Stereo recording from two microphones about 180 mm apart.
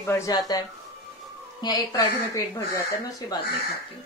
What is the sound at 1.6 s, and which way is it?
A woman's voice, 20° left (ahead or behind).